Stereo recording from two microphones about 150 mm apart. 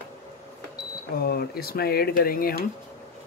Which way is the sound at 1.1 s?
90° left.